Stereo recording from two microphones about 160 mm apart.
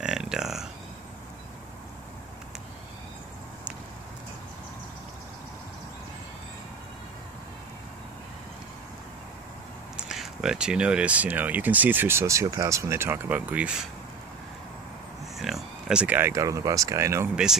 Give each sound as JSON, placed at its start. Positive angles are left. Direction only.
{"t": 0.0, "sound": "a sound", "side_deg": -5}
{"t": 9.9, "sound": "speech", "side_deg": 0}
{"t": 15.3, "sound": "speech", "side_deg": 0}